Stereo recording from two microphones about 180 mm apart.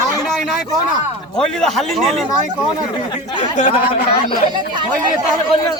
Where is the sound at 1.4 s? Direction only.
5° left (ahead or behind).